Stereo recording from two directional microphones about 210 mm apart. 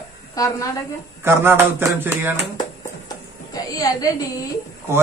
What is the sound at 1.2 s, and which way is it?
A man's voice, 10° right (ahead or behind).